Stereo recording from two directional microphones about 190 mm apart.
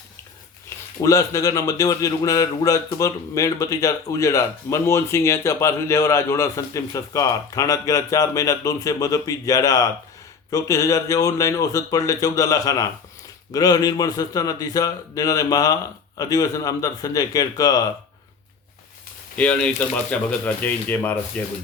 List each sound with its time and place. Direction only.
1.0 s a man's voice: 15° left (ahead or behind)
19.4 s a man's voice: 5° left (ahead or behind)